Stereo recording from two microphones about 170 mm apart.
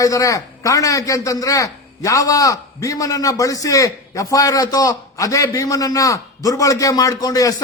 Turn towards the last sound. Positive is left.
turn(degrees=20)  # may be behind; listen again after turning